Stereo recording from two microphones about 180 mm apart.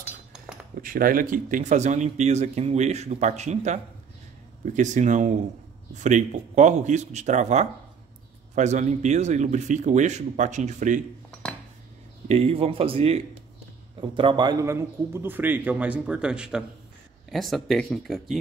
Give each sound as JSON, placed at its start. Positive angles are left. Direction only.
{"t": 0.8, "sound": "speech", "side_deg": -50}
{"t": 12.3, "sound": "a man's voice", "side_deg": -35}